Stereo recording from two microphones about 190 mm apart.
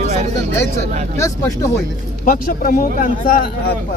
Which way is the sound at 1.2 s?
15° left (ahead or behind).